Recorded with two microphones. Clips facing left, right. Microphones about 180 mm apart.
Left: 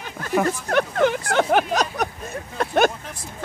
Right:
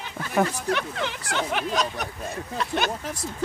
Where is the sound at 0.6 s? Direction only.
50° left (ahead or behind).